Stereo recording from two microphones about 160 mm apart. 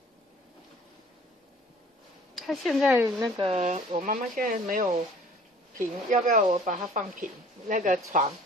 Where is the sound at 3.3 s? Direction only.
40° right (ahead or behind).